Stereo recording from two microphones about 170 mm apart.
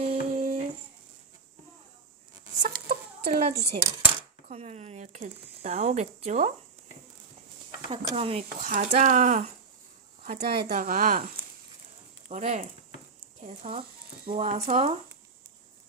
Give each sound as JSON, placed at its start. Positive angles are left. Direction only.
{"t": 0.0, "sound": "guitar", "side_deg": -35}
{"t": 2.6, "sound": "chicken", "side_deg": -55}
{"t": 3.5, "sound": "dishes", "side_deg": -70}
{"t": 4.4, "sound": "speech", "side_deg": -45}
{"t": 7.9, "sound": "speech", "side_deg": -35}
{"t": 8.5, "sound": "speech", "side_deg": -55}
{"t": 12.3, "sound": "speech", "side_deg": -45}